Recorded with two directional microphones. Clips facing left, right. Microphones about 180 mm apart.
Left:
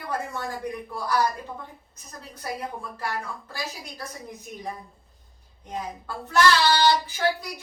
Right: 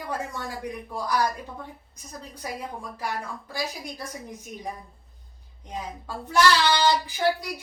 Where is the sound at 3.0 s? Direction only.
15° right (ahead or behind).